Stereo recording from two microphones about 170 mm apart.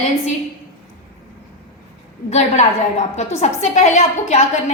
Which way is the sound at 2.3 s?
40° left (ahead or behind).